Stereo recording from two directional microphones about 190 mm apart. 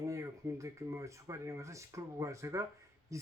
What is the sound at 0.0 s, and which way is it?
Speech, 15° right (ahead or behind).